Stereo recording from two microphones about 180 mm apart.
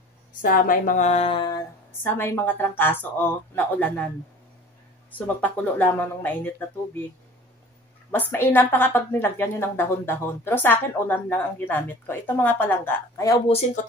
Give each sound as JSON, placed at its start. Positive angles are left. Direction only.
{"t": 0.4, "sound": "speech", "side_deg": 50}
{"t": 2.0, "sound": "a woman's voice", "side_deg": 10}
{"t": 5.1, "sound": "a woman's voice", "side_deg": 10}
{"t": 8.1, "sound": "a woman's voice", "side_deg": 10}